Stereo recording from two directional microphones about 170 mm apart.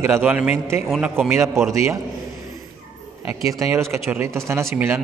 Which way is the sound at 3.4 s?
20° right (ahead or behind).